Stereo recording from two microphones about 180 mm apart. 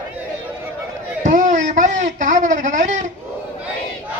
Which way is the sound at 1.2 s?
45° right (ahead or behind).